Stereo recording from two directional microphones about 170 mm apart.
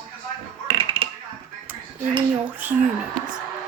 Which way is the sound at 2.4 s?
10° right (ahead or behind).